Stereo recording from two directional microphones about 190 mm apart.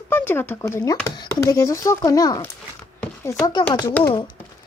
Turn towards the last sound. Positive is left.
turn(degrees=10)  # may be behind; listen again after turning